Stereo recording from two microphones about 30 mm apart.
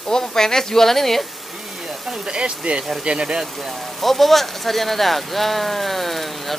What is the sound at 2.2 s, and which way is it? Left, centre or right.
Speech, right.